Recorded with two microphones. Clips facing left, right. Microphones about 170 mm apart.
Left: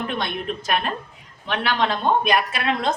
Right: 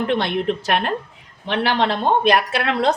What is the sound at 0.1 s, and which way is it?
Speech, 75° right (ahead or behind).